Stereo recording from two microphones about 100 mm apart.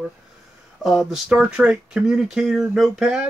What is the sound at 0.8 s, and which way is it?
Speech, centre (ahead or behind).